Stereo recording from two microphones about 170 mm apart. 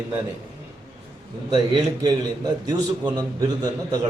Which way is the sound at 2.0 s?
25° right (ahead or behind).